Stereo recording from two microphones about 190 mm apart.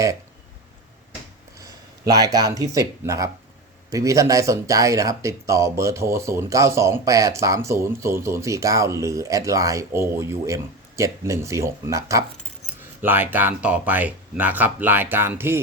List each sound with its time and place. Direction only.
1.6 s speech: 20° right (ahead or behind)